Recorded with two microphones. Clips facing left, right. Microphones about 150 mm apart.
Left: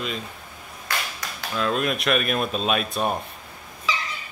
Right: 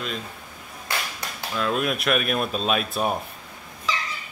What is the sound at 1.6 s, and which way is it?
Speech, centre (ahead or behind).